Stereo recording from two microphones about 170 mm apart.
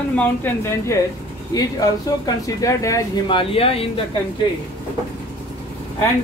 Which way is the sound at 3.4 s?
35° left (ahead or behind).